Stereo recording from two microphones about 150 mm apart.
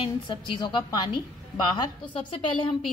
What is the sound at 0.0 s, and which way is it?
A woman's voice, 30° left (ahead or behind).